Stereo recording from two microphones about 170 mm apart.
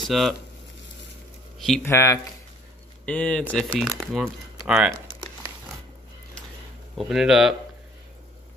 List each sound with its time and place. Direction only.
0.1 s speech: centre (ahead or behind)
1.9 s speech: 15° left (ahead or behind); by 4.9 s 5° right (ahead or behind)
7.0 s speech: centre (ahead or behind)